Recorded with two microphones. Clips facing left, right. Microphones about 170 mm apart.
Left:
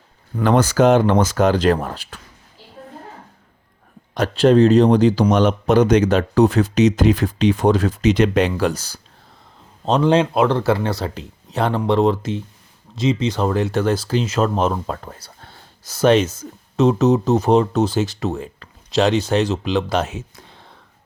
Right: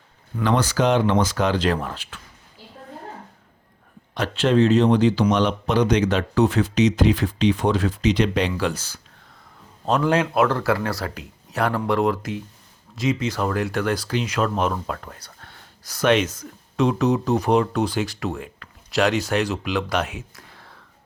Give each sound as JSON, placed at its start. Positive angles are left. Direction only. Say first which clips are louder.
{"t": 0.3, "sound": "speech", "louder": "left 5 dB", "side_deg": 45}
{"t": 4.1, "sound": "speech", "louder": "left 6 dB", "side_deg": 40}
{"t": 9.8, "sound": "speech", "louder": "left 4 dB", "side_deg": 25}